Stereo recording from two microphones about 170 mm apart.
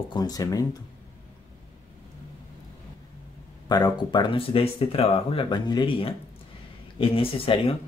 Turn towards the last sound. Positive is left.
turn(degrees=30)  # may be behind; listen again after turning